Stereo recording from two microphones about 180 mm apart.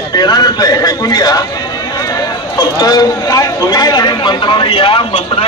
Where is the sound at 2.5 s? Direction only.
25° left (ahead or behind).